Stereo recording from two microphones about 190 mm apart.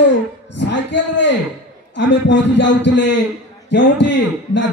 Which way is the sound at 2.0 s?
70° left (ahead or behind).